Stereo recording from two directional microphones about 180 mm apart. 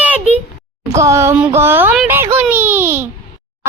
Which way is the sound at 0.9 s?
15° right (ahead or behind).